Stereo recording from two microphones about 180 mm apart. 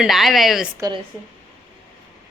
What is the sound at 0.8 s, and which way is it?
Speech, 20° right (ahead or behind).